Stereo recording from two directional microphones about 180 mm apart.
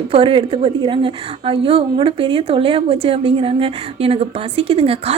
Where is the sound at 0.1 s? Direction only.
30° right (ahead or behind).